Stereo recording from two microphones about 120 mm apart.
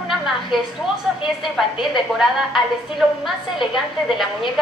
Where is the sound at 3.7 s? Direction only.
Centre (ahead or behind).